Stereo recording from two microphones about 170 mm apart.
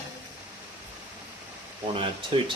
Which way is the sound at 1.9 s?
30° right (ahead or behind).